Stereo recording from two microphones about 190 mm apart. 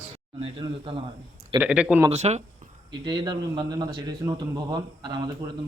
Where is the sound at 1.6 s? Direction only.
5° right (ahead or behind).